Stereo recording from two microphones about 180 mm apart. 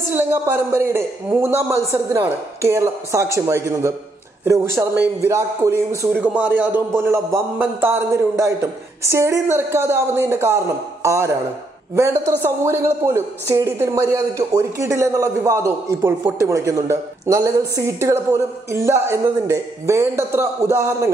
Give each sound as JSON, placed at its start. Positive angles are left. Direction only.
{"t": 0.1, "sound": "a woman's voice", "side_deg": -10}